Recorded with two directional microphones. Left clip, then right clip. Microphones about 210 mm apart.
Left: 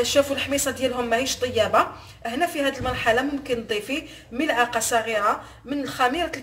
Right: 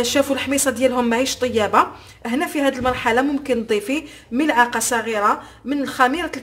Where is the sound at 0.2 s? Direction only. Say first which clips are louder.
Right 2 dB; 55° right (ahead or behind).